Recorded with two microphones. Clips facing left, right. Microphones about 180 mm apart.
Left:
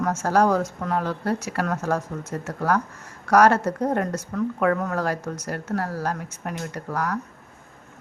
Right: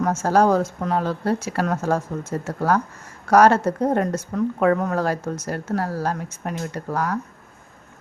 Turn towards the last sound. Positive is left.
turn(degrees=-25)  # may be behind; listen again after turning